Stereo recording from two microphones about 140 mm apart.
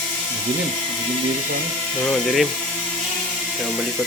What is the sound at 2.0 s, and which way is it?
Speech, 5° left (ahead or behind).